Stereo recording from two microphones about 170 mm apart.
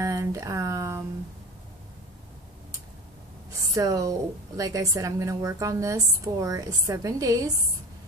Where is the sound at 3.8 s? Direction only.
20° right (ahead or behind).